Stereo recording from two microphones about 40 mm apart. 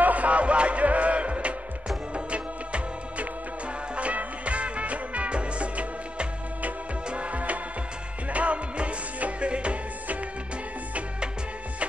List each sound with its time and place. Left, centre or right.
0.0 s music: right